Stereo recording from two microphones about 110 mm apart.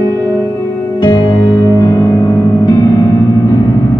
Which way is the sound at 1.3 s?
25° left (ahead or behind).